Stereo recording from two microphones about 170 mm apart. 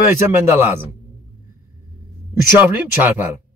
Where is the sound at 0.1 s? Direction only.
15° right (ahead or behind).